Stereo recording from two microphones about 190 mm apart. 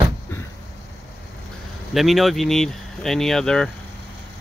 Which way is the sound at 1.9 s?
Centre (ahead or behind).